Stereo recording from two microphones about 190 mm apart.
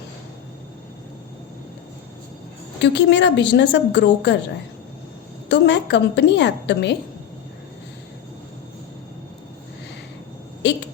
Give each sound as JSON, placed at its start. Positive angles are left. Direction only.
{"t": 2.8, "sound": "a woman's voice", "side_deg": 65}
{"t": 5.5, "sound": "a woman's voice", "side_deg": 65}
{"t": 10.6, "sound": "a sound", "side_deg": 65}